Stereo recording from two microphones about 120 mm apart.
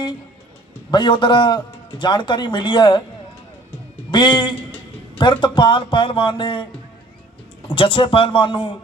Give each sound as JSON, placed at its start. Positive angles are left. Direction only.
{"t": 0.9, "sound": "a man's voice", "side_deg": 40}
{"t": 4.1, "sound": "a man's voice", "side_deg": 40}
{"t": 7.7, "sound": "speech", "side_deg": 45}